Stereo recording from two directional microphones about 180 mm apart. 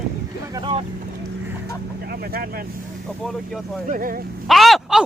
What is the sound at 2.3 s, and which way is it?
Speech, 55° right (ahead or behind).